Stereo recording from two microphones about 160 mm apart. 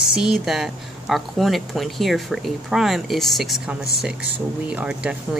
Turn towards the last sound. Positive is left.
turn(degrees=-5)  # may be behind; listen again after turning